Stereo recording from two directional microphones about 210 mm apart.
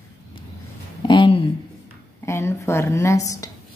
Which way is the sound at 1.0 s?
20° left (ahead or behind).